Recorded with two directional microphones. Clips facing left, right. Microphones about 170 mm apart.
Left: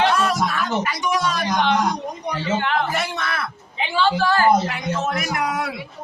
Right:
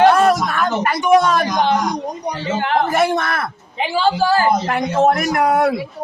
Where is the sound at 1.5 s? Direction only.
35° right (ahead or behind).